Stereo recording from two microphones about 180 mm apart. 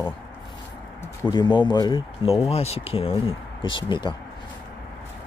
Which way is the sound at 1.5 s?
25° left (ahead or behind).